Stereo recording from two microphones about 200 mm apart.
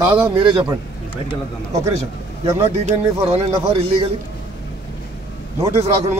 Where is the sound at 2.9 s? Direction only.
35° right (ahead or behind).